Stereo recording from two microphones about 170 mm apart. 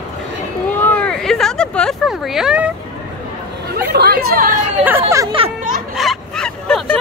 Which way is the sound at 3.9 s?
65° right (ahead or behind).